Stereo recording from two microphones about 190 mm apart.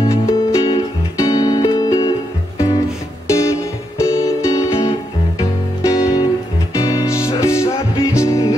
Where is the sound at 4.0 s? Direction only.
15° left (ahead or behind).